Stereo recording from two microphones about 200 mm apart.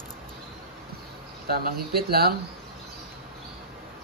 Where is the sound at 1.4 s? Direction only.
50° right (ahead or behind).